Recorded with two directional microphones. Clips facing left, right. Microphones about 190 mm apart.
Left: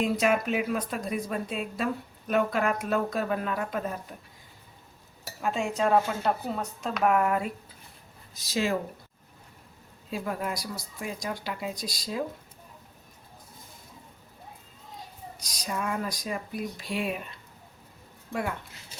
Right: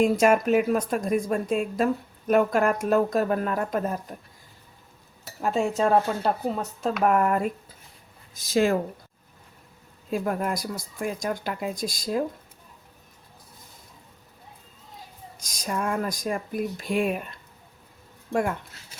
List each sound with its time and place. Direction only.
0.0 s speech: 45° right (ahead or behind)
5.4 s speech: 40° right (ahead or behind)
10.1 s speech: 50° right (ahead or behind)
15.4 s speech: 50° right (ahead or behind)